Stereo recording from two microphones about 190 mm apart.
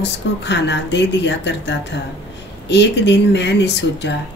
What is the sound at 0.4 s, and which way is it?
A woman's voice, 65° left (ahead or behind).